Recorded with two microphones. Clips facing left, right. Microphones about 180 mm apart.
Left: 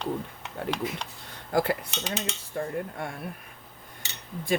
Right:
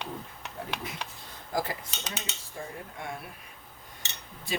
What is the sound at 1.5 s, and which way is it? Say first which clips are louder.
Speech: left 7 dB; 65° left (ahead or behind).